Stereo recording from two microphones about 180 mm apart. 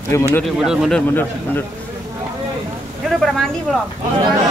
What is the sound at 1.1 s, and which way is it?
Speech, 10° left (ahead or behind).